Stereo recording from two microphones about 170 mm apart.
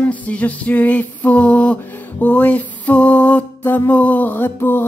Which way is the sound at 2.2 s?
10° left (ahead or behind).